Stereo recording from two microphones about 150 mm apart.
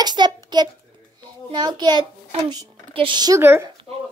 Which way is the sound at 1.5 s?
30° right (ahead or behind).